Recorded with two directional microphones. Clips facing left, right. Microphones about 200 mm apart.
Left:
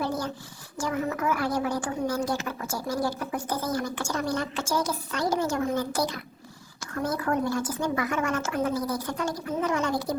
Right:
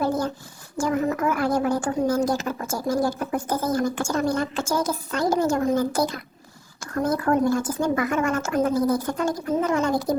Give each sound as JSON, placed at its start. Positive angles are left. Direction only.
{"t": 0.8, "sound": "a woman's voice", "side_deg": -50}